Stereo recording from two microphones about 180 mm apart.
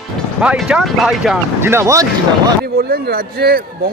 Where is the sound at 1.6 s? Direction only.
15° right (ahead or behind).